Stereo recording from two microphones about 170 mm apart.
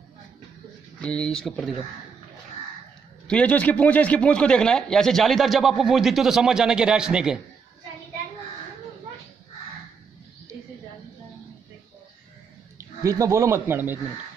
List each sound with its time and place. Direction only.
1.0 s a man's voice: 5° left (ahead or behind)
3.3 s a man's voice: 5° left (ahead or behind)
12.7 s speech: 20° right (ahead or behind)